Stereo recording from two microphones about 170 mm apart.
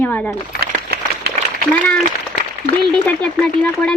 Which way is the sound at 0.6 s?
65° right (ahead or behind).